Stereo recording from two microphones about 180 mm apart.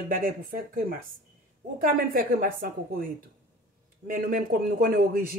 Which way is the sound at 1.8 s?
50° right (ahead or behind).